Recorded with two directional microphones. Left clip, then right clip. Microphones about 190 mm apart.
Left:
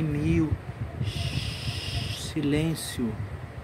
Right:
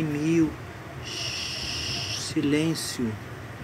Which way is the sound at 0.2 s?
15° left (ahead or behind).